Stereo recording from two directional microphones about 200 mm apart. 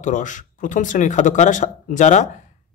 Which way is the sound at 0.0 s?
40° left (ahead or behind).